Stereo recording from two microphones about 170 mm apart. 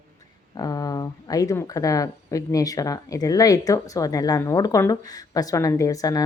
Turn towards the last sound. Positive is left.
turn(degrees=20)  # may be behind; listen again after turning